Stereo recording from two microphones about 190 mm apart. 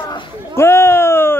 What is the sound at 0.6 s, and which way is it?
Speech, 15° left (ahead or behind).